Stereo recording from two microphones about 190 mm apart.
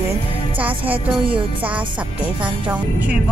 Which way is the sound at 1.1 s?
5° right (ahead or behind).